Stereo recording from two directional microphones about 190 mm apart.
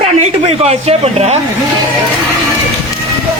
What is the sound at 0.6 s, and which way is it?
Speech, 35° right (ahead or behind).